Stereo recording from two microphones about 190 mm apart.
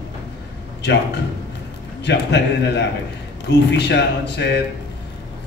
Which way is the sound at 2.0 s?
65° left (ahead or behind).